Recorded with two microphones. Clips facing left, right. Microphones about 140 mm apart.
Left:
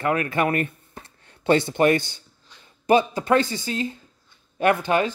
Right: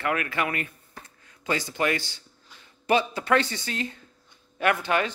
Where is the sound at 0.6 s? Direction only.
25° left (ahead or behind).